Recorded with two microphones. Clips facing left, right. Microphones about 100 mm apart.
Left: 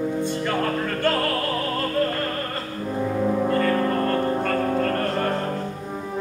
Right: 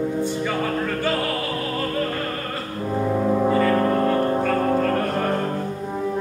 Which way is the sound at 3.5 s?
5° right (ahead or behind).